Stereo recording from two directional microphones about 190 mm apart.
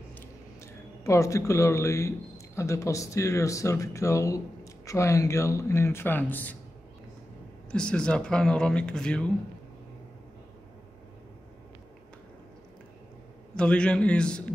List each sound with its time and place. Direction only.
1.0 s speech: 15° left (ahead or behind)
7.7 s speech: 5° left (ahead or behind)
13.6 s speech: 5° left (ahead or behind)